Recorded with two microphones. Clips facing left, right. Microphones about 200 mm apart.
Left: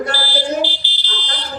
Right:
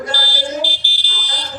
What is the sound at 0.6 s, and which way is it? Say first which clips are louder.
Fire alarm: left 2 dB; 10° right (ahead or behind).